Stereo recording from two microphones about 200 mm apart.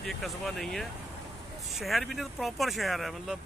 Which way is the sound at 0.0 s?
Centre (ahead or behind).